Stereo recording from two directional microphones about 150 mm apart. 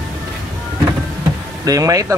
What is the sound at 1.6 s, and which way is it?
Speech, 25° right (ahead or behind).